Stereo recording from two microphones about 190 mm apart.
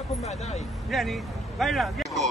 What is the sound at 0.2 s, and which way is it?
Speech, 35° left (ahead or behind).